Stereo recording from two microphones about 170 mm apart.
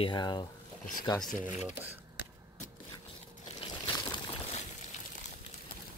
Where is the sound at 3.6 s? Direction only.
25° left (ahead or behind).